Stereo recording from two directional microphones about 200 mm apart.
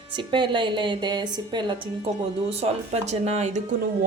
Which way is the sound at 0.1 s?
25° right (ahead or behind).